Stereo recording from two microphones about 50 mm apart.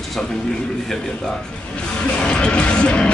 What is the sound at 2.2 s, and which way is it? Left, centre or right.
Music, left.